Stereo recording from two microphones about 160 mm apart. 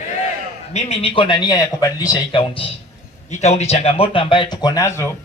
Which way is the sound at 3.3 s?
45° left (ahead or behind).